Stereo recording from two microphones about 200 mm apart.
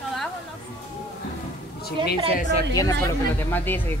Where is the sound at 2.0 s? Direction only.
25° right (ahead or behind).